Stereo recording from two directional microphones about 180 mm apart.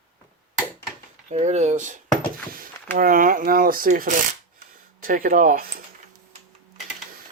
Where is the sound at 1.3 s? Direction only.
40° right (ahead or behind).